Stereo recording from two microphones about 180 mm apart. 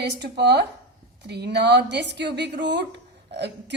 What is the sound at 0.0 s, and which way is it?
Speech, 70° right (ahead or behind).